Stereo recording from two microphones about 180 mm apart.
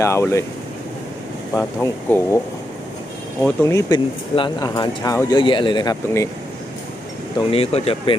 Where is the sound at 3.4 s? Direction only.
15° left (ahead or behind).